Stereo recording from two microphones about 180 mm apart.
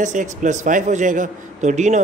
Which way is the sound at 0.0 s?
45° right (ahead or behind).